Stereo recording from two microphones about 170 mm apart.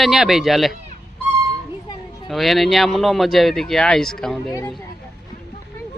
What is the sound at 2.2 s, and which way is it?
Speech, centre (ahead or behind).